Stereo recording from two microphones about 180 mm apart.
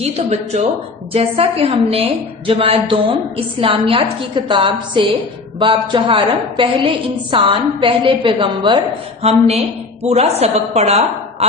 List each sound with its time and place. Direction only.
0.0 s a woman's voice: 35° right (ahead or behind)